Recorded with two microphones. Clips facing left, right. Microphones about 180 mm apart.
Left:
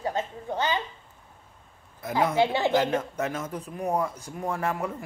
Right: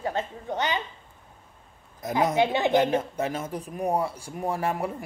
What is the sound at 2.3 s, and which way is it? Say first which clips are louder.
Speech: right 1 dB; 20° right (ahead or behind).